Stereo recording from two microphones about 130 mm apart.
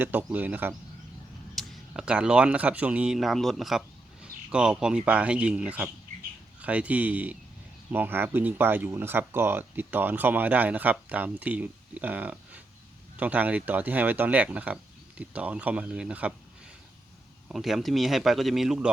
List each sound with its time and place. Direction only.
0.0 s speech: 15° right (ahead or behind)
1.5 s speech: centre (ahead or behind)
17.5 s speech: centre (ahead or behind)